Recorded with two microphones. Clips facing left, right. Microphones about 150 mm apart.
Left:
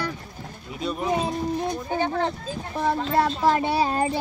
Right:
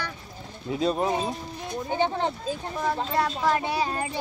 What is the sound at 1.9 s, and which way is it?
Speech, 20° right (ahead or behind).